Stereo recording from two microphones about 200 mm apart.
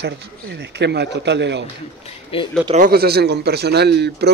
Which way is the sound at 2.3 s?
30° left (ahead or behind).